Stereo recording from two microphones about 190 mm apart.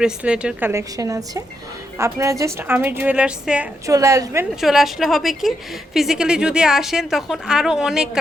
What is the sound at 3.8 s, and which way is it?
Speech, 15° right (ahead or behind).